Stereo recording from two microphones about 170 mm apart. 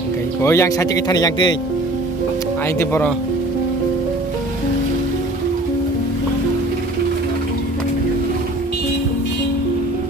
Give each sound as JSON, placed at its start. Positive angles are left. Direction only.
{"t": 0.4, "sound": "speech", "side_deg": 15}
{"t": 2.8, "sound": "speech", "side_deg": 15}